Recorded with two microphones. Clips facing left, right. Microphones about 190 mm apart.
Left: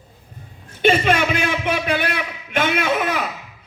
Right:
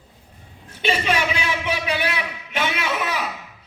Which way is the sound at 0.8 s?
50° left (ahead or behind).